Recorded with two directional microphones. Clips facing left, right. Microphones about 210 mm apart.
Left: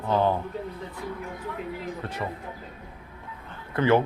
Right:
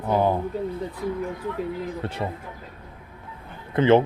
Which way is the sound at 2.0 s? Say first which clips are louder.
Right 4 dB; 30° right (ahead or behind).